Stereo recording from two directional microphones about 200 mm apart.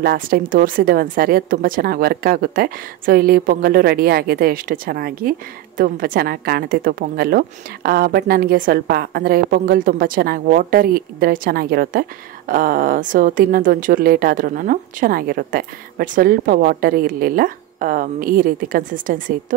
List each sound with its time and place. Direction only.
0.0 s a woman's voice: 50° right (ahead or behind)